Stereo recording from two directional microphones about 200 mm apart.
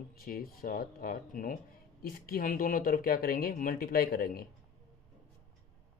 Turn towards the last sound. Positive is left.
turn(degrees=50)  # may be behind; listen again after turning